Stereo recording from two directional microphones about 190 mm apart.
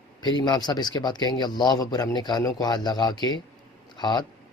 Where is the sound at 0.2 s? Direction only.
20° left (ahead or behind).